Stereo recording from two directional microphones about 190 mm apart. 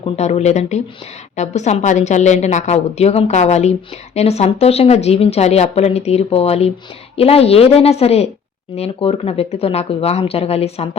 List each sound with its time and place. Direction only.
0.0 s a woman's voice: 35° left (ahead or behind)